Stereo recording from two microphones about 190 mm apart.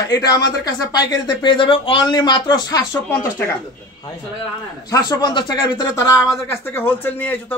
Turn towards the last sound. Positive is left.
turn(degrees=10)  # may be behind; listen again after turning